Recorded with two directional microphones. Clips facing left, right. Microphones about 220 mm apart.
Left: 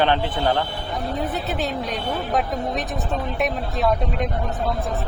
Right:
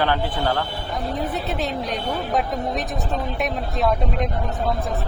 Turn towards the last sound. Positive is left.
turn(degrees=0)  # may be behind; listen again after turning